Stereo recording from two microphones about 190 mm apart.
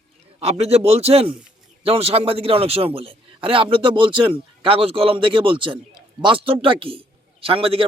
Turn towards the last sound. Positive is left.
turn(degrees=-30)  # may be behind; listen again after turning